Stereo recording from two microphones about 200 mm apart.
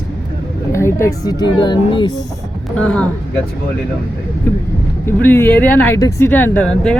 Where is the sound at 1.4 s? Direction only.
20° left (ahead or behind).